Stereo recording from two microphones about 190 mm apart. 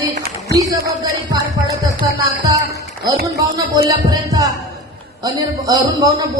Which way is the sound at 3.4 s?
20° right (ahead or behind).